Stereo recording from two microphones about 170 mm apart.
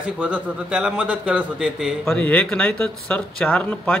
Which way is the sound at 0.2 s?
5° right (ahead or behind).